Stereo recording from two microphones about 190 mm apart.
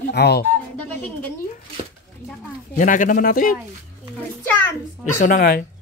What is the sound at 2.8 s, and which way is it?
Speech, 45° left (ahead or behind).